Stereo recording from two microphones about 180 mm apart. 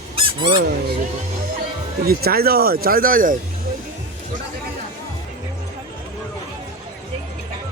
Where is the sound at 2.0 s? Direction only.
55° right (ahead or behind).